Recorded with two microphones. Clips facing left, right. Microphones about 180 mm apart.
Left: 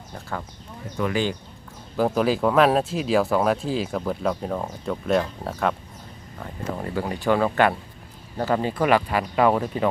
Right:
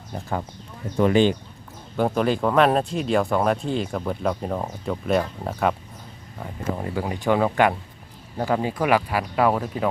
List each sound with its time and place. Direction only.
0.9 s speech: 30° right (ahead or behind)
2.0 s speech: centre (ahead or behind)